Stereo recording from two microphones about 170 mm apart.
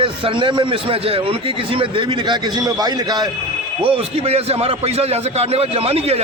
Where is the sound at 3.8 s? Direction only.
35° right (ahead or behind).